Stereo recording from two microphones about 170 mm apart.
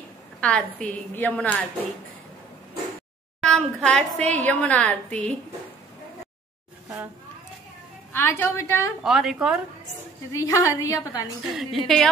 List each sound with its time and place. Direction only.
0.4 s a woman's voice: 5° left (ahead or behind)
3.4 s a woman's voice: 5° left (ahead or behind)
8.1 s a woman's voice: 15° left (ahead or behind)
9.0 s a woman's voice: centre (ahead or behind)
10.3 s a woman's voice: 20° left (ahead or behind)
11.5 s a woman's voice: centre (ahead or behind)